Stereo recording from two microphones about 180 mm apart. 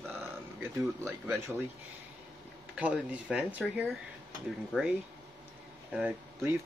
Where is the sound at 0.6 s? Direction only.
15° right (ahead or behind).